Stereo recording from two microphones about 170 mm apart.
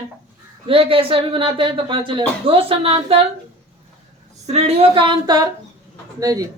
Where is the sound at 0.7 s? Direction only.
35° right (ahead or behind).